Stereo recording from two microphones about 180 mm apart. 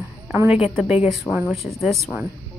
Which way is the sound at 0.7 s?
Centre (ahead or behind).